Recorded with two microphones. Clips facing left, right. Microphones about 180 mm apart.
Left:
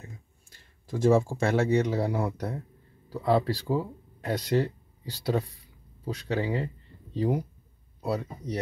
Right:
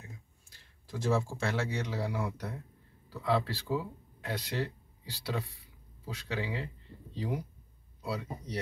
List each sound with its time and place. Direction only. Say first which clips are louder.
0.5 s speech: left 8 dB; 50° left (ahead or behind)